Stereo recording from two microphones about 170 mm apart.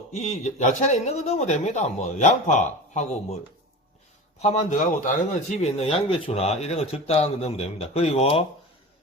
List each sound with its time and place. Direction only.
0.1 s speech: 40° left (ahead or behind)
4.4 s speech: 45° left (ahead or behind)